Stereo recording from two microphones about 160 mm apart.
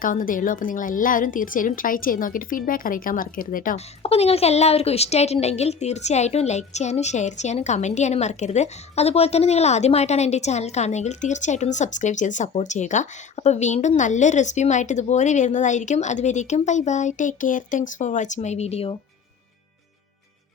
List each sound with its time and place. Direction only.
0.0 s a woman's voice: 60° left (ahead or behind)
3.8 s speech: 40° left (ahead or behind)